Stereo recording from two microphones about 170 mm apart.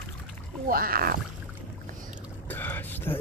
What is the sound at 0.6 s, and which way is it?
Speech, 60° right (ahead or behind).